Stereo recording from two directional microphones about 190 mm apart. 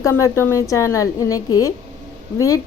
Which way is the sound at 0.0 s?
15° left (ahead or behind).